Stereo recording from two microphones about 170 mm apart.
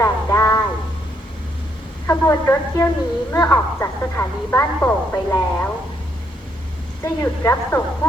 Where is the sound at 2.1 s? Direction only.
15° left (ahead or behind).